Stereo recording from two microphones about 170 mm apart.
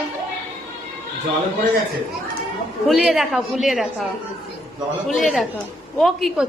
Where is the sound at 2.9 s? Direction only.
Centre (ahead or behind).